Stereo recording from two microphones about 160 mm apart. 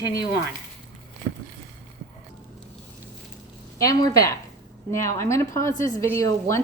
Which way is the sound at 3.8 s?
25° left (ahead or behind).